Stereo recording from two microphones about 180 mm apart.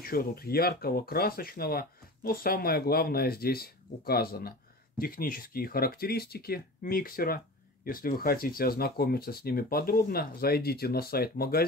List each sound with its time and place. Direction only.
0.0 s speech: 55° left (ahead or behind)